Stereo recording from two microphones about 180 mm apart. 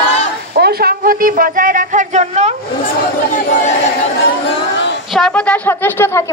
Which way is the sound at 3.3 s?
40° left (ahead or behind).